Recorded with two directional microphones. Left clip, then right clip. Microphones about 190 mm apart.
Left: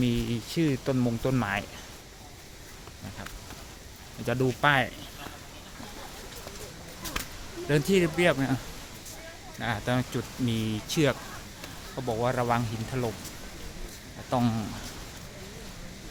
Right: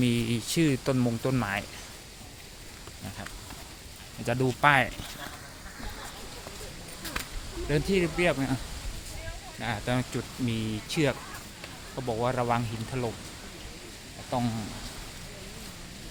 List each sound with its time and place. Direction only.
0.0 s speech: 15° right (ahead or behind)
0.9 s speech: 5° right (ahead or behind)
4.3 s speech: centre (ahead or behind)
7.7 s speech: 20° left (ahead or behind)
9.6 s speech: 5° left (ahead or behind)
14.3 s speech: 25° left (ahead or behind)